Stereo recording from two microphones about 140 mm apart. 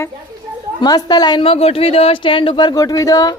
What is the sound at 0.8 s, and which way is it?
Speech, 30° left (ahead or behind).